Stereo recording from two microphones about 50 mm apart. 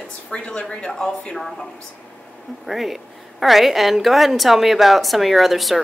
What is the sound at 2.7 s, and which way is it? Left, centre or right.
A woman's voice, centre.